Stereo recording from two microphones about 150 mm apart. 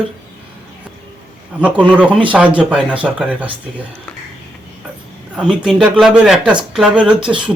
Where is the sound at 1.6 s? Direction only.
10° right (ahead or behind).